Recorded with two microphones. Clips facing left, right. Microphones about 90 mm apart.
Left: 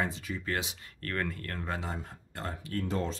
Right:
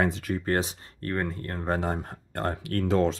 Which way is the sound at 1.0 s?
25° right (ahead or behind).